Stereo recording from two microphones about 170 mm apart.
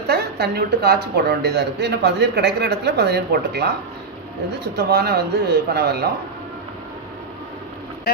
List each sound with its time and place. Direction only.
0.1 s speech: 70° right (ahead or behind)